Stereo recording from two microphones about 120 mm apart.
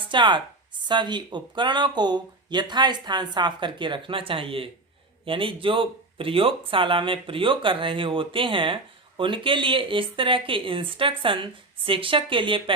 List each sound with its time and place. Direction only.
0.1 s speech: 40° right (ahead or behind)